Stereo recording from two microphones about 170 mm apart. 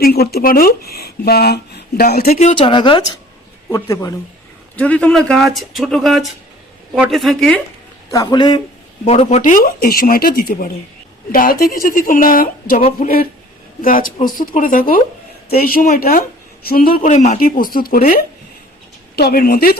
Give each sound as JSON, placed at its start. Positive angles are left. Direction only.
{"t": 0.0, "sound": "speech", "side_deg": 65}
{"t": 2.2, "sound": "speech", "side_deg": 45}
{"t": 2.6, "sound": "speech", "side_deg": 30}
{"t": 4.8, "sound": "speech", "side_deg": 10}
{"t": 8.1, "sound": "speech", "side_deg": 25}
{"t": 9.0, "sound": "speech", "side_deg": 40}